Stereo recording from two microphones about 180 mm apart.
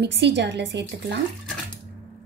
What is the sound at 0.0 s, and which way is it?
Speech, 70° right (ahead or behind).